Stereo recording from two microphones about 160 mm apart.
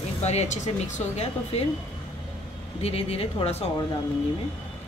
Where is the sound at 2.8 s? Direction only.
40° left (ahead or behind).